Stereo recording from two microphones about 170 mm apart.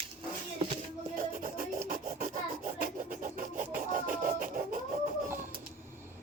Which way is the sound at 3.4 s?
50° right (ahead or behind).